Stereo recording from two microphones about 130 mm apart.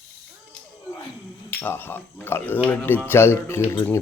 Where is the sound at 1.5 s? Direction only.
15° left (ahead or behind).